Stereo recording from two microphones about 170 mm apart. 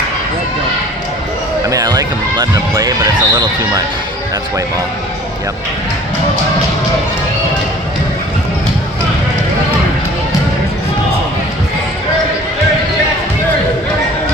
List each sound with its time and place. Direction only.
1.7 s speech: 20° right (ahead or behind)